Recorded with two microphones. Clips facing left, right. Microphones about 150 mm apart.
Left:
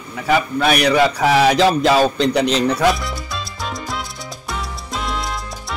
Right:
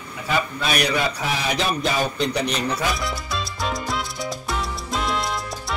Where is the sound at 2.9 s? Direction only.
Centre (ahead or behind).